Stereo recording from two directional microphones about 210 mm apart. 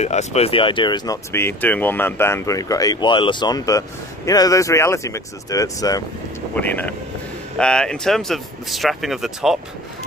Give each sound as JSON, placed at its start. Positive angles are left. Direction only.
{"t": 0.0, "sound": "speech", "side_deg": 30}